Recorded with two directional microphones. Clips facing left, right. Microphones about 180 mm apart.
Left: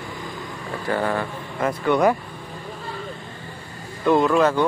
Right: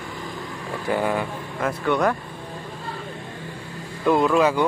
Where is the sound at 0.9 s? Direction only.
15° right (ahead or behind).